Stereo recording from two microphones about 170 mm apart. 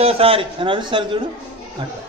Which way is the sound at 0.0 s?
35° right (ahead or behind).